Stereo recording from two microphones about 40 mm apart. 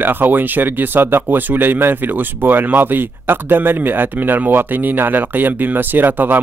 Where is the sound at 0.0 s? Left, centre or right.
Right.